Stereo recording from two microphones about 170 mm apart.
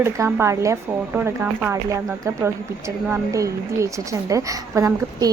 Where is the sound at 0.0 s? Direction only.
15° right (ahead or behind).